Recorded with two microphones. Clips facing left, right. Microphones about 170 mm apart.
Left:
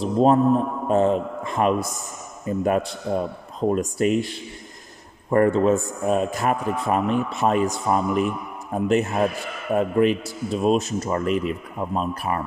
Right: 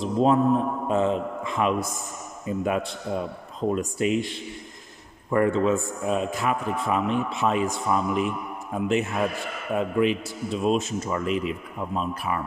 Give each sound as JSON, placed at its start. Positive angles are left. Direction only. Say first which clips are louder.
{"t": 0.0, "sound": "mantra", "louder": "left 3 dB", "side_deg": 45}
{"t": 0.8, "sound": "a man's voice", "louder": "left 7 dB", "side_deg": 40}